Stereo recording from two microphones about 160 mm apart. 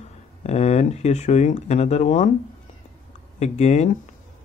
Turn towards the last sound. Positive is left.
turn(degrees=45)  # may be behind; listen again after turning